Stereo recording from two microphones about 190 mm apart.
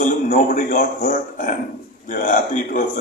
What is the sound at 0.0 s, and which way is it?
A man's voice, 40° left (ahead or behind).